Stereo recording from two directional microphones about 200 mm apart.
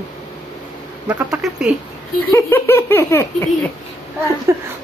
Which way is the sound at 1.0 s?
5° right (ahead or behind).